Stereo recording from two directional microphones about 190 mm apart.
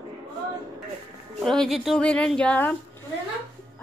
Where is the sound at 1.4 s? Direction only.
Centre (ahead or behind).